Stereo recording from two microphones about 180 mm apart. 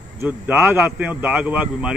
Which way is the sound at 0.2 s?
10° right (ahead or behind).